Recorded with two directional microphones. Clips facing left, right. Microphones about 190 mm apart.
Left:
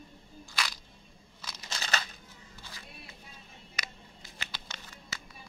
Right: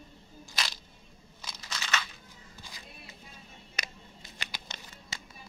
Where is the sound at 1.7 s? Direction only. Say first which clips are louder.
Even; 35° left (ahead or behind).